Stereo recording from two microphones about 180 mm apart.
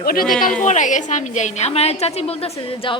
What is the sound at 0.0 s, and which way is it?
Speech, 55° left (ahead or behind).